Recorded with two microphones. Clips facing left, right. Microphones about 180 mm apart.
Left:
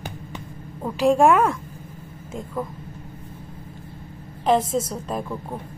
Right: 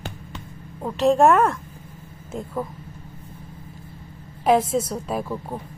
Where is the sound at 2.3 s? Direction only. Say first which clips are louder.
Right 1 dB; 5° right (ahead or behind).